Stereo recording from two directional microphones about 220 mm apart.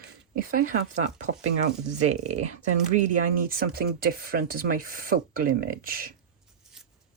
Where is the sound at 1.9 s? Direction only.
80° right.